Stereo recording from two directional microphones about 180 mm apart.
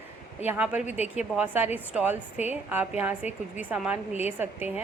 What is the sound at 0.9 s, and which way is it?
Speech, 40° left (ahead or behind).